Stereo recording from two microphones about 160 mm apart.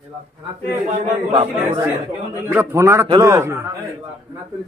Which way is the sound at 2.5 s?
15° right (ahead or behind).